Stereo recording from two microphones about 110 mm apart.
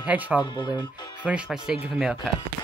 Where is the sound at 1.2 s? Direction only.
10° right (ahead or behind).